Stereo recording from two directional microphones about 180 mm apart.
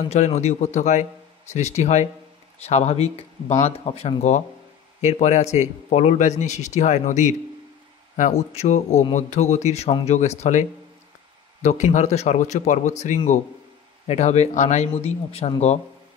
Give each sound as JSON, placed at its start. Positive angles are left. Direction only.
{"t": 0.0, "sound": "a man's voice", "side_deg": 35}